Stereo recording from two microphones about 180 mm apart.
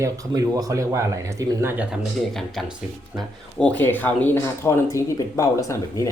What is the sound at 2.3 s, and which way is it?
Speech, centre (ahead or behind).